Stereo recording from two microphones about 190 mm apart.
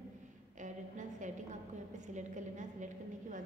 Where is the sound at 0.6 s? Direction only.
40° right (ahead or behind).